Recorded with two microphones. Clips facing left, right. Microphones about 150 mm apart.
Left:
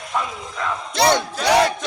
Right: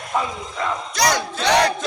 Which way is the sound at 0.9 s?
25° left (ahead or behind).